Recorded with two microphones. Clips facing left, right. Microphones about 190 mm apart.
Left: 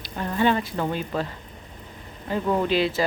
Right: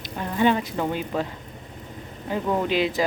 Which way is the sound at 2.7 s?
15° right (ahead or behind).